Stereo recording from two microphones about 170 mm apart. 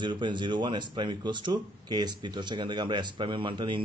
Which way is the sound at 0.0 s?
30° right (ahead or behind).